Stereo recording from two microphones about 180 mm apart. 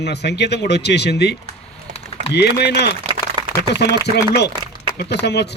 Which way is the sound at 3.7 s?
65° left (ahead or behind).